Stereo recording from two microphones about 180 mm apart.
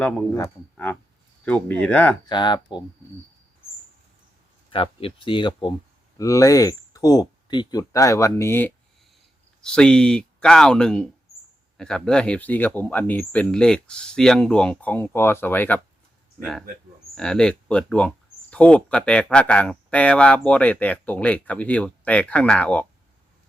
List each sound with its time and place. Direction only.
0.0 s speech: 5° left (ahead or behind)
2.3 s speech: 25° left (ahead or behind)
4.7 s speech: 30° left (ahead or behind); by 22.9 s 5° left (ahead or behind)